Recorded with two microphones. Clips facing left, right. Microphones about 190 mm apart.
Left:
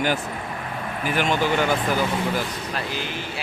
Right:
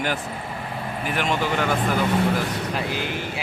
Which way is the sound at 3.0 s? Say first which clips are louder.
Right 2 dB; 15° right (ahead or behind).